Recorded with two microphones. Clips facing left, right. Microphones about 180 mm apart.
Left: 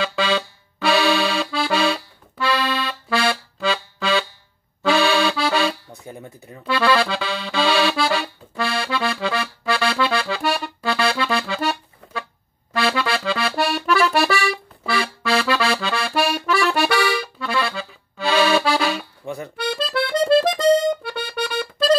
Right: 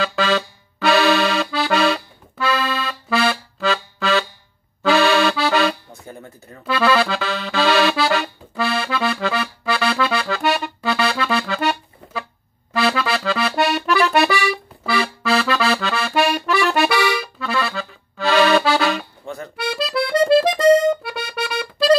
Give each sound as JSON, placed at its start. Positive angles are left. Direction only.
{"t": 0.7, "sound": "accordion", "side_deg": 0}
{"t": 5.9, "sound": "a sound", "side_deg": 15}
{"t": 6.6, "sound": "accordion", "side_deg": 0}
{"t": 19.2, "sound": "music", "side_deg": 15}
{"t": 19.5, "sound": "accordion", "side_deg": -5}